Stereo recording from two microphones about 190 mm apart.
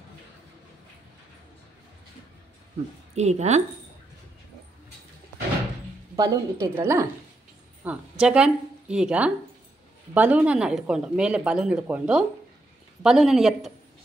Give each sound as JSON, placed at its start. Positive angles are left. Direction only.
{"t": 3.2, "sound": "a woman's voice", "side_deg": -35}
{"t": 6.1, "sound": "a woman's voice", "side_deg": -20}